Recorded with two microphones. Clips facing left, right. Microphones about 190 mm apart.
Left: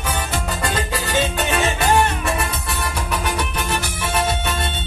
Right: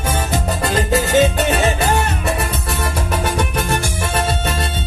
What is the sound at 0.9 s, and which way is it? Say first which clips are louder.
Music: right 11 dB; 40° right (ahead or behind).